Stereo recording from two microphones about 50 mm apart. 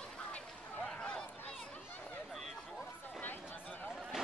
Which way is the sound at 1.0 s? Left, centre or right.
Centre.